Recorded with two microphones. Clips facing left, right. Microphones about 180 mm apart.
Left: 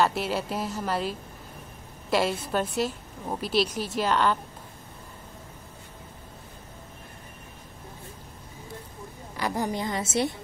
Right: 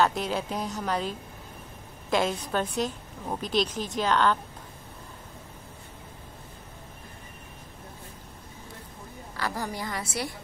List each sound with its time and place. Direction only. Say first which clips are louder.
0.0 s a woman's voice: even; 5° left (ahead or behind)
9.4 s a woman's voice: left 4 dB; 20° left (ahead or behind)